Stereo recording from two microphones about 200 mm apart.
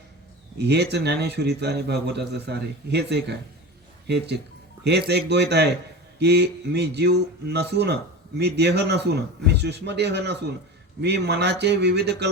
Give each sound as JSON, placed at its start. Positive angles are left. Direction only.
{"t": 0.6, "sound": "speech", "side_deg": -55}